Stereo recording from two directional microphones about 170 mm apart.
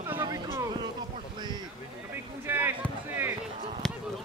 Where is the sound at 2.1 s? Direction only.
10° right (ahead or behind).